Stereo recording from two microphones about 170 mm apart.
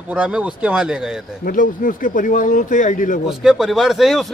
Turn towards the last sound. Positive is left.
turn(degrees=0)  # may be behind; listen again after turning